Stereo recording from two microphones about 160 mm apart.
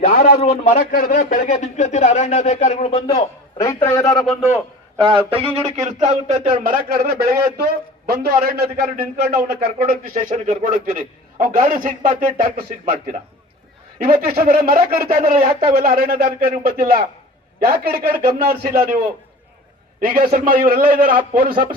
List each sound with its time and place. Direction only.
0.1 s a sound: 65° left (ahead or behind)
0.4 s speech: 45° left (ahead or behind)
0.8 s speech: 65° left (ahead or behind); by 3.2 s 40° left (ahead or behind)
3.6 s a man's voice: 15° left (ahead or behind)
4.1 s a man's voice: centre (ahead or behind)
5.0 s speech: 35° right (ahead or behind); by 18.8 s 70° right (ahead or behind)
20.1 s speech: 60° right (ahead or behind)